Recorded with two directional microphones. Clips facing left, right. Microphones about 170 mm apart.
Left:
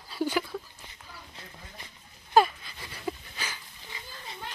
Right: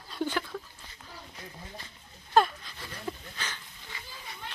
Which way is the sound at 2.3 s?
5° left (ahead or behind).